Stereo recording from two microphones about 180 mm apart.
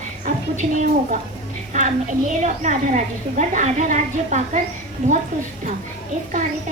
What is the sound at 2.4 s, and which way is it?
A woman's voice, 45° right (ahead or behind).